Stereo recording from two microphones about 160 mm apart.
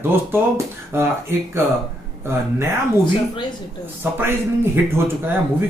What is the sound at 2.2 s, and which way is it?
Speech, 15° right (ahead or behind).